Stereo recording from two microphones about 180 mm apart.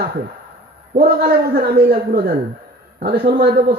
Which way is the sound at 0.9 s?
60° right (ahead or behind).